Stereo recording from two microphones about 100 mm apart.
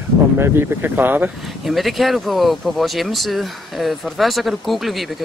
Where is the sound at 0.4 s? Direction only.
25° right (ahead or behind).